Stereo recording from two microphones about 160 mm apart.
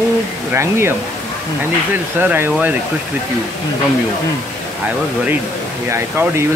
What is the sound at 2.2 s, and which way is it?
Speech, 10° right (ahead or behind).